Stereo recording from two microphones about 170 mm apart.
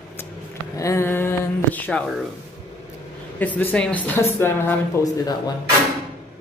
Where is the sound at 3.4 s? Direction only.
10° left (ahead or behind).